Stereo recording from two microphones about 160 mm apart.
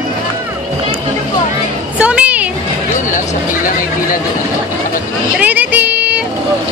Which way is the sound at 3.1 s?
60° left (ahead or behind).